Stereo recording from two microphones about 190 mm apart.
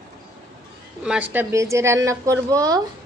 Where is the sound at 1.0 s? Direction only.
5° right (ahead or behind).